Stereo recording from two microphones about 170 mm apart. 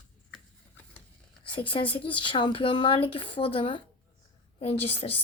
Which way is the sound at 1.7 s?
30° left (ahead or behind).